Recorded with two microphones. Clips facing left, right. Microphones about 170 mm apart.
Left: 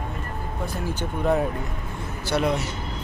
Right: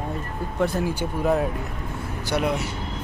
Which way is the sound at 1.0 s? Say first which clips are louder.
Left 2 dB; 5° right (ahead or behind).